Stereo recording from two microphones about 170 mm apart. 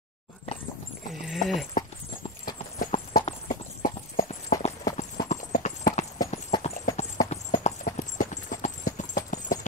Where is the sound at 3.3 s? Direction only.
50° left (ahead or behind).